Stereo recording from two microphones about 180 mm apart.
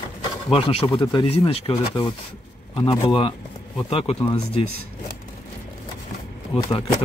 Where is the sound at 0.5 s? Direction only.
30° left (ahead or behind).